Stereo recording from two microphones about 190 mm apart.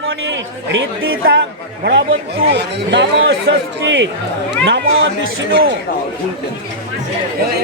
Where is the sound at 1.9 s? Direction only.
70° right (ahead or behind).